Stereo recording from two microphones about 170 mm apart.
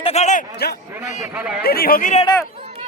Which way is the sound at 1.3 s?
10° right (ahead or behind).